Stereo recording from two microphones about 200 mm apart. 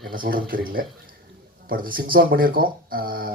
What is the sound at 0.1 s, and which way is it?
Speech, 45° right (ahead or behind).